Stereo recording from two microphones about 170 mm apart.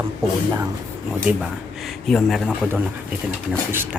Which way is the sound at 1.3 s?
5° right (ahead or behind).